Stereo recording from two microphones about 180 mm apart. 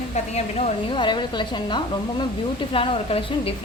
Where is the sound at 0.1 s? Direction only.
35° left (ahead or behind).